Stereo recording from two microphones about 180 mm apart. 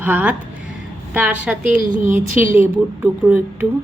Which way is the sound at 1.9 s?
45° right (ahead or behind).